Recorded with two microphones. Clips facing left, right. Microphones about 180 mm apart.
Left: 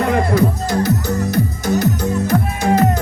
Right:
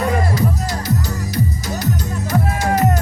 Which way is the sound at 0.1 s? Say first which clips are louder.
Left 4 dB; 55° left (ahead or behind).